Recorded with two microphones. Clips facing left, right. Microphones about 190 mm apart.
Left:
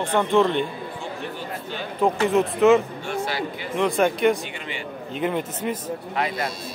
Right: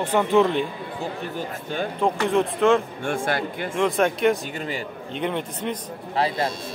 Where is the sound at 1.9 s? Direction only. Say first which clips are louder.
Left 2 dB; 5° left (ahead or behind).